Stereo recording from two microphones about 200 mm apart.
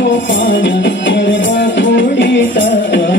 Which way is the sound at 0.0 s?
70° left (ahead or behind).